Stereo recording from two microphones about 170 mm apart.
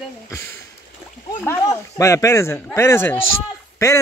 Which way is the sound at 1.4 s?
15° left (ahead or behind).